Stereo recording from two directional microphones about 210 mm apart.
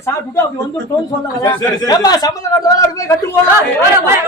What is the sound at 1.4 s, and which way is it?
A man's voice, 15° left (ahead or behind).